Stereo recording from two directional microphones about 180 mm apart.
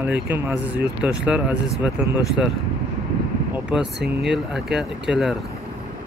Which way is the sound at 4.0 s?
65° right (ahead or behind).